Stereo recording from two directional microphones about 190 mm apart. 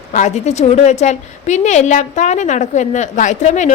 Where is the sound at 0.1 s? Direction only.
40° left (ahead or behind).